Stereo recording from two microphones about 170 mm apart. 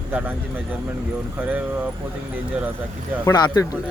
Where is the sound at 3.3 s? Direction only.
20° left (ahead or behind).